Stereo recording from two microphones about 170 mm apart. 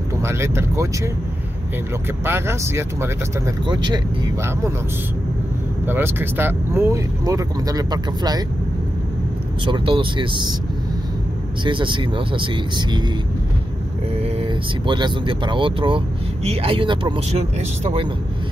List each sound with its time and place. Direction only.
0.2 s speech: 15° right (ahead or behind)
2.2 s speech: 15° right (ahead or behind)
5.9 s speech: 10° right (ahead or behind)
9.7 s speech: 30° right (ahead or behind)
11.6 s speech: 30° right (ahead or behind)
14.2 s speech: 30° right (ahead or behind)